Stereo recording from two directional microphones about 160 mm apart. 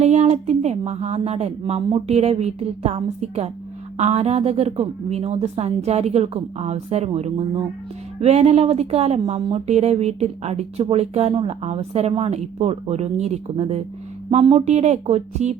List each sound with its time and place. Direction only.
0.0 s speech: 45° right (ahead or behind)